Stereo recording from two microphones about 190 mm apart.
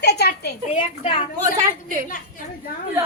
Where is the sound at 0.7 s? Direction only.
35° left (ahead or behind).